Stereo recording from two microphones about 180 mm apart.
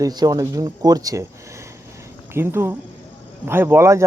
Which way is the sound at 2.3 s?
15° right (ahead or behind).